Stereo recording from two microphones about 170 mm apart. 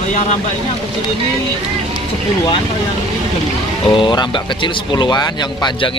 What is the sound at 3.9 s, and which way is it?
Speech, 25° left (ahead or behind).